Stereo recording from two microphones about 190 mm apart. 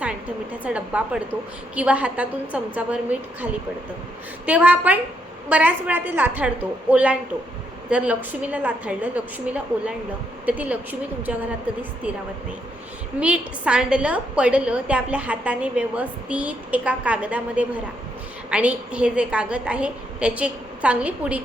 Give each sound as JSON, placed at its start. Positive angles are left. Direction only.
{"t": 0.6, "sound": "a woman's voice", "side_deg": -5}
{"t": 4.4, "sound": "a woman's voice", "side_deg": -5}
{"t": 13.1, "sound": "a woman's voice", "side_deg": -5}